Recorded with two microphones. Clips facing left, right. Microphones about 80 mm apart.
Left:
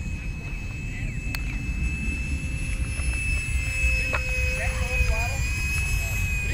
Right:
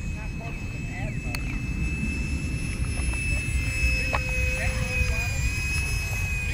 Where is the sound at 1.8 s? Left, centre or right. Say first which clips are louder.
Right 2 dB; centre.